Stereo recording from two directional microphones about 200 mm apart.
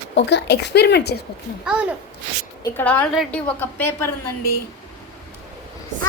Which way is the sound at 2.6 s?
10° left (ahead or behind).